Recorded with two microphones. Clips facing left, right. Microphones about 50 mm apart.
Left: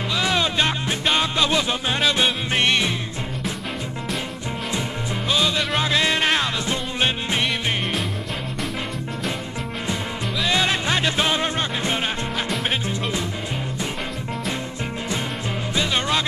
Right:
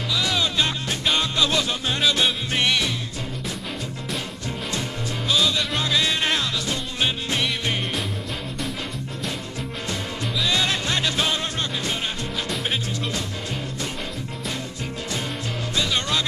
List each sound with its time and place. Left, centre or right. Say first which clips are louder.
0.1 s music: left 2 dB; left
2.5 s music: left 4 dB; left
5.8 s music: left 4 dB; left
10.5 s music: left 4 dB; left
15.7 s music: left 2 dB; left